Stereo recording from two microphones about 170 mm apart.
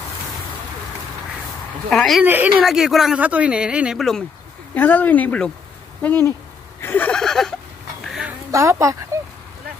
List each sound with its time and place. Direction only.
1.9 s speech: centre (ahead or behind)
2.2 s speech: 10° right (ahead or behind)
4.7 s speech: 10° left (ahead or behind)
8.1 s a sound: 5° right (ahead or behind)
8.5 s speech: 15° right (ahead or behind)
9.1 s a sound: 15° right (ahead or behind)